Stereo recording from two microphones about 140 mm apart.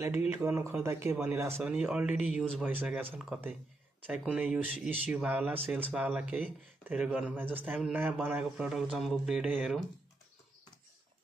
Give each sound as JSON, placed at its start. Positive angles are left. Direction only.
{"t": 0.3, "sound": "speech", "side_deg": -20}